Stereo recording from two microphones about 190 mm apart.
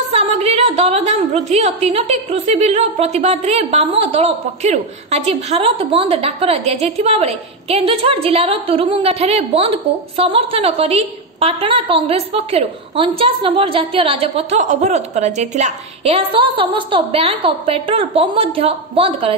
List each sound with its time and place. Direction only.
0.1 s a woman's voice: 30° right (ahead or behind)